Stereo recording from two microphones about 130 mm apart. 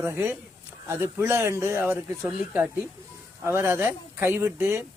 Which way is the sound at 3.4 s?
20° right (ahead or behind).